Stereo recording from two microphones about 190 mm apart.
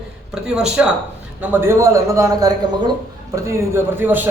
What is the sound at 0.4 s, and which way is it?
A man's voice, 5° right (ahead or behind).